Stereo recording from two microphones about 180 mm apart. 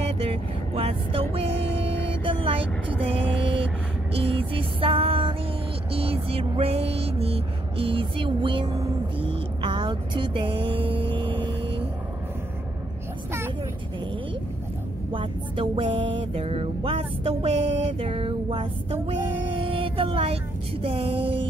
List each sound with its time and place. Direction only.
0.0 s vehicle: 35° right (ahead or behind)
4.1 s music: 30° right (ahead or behind)
15.1 s a sound: 30° right (ahead or behind)
16.2 s music: 30° right (ahead or behind)